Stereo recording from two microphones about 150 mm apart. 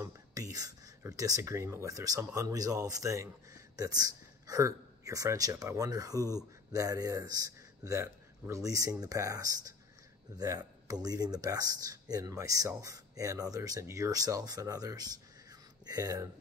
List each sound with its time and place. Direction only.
0.0 s speech: 25° right (ahead or behind)
6.1 s speech: 15° left (ahead or behind)
6.7 s speech: 25° right (ahead or behind)